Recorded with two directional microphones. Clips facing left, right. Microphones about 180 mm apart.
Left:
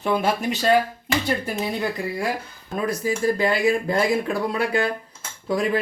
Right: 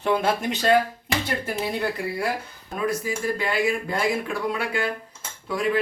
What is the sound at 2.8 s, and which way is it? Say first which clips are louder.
Speech: left 3 dB; 40° left (ahead or behind).